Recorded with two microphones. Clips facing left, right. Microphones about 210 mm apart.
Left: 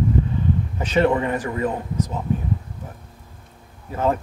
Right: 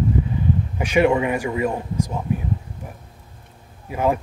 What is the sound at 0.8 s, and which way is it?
Speech, 10° right (ahead or behind).